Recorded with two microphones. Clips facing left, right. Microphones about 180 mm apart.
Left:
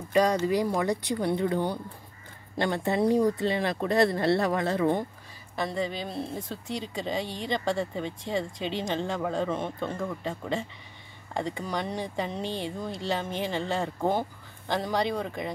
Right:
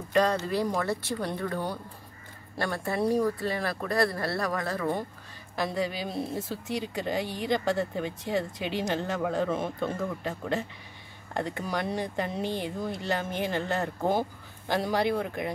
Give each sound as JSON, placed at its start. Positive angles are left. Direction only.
{"t": 0.1, "sound": "speech", "side_deg": 10}
{"t": 5.6, "sound": "speech", "side_deg": -5}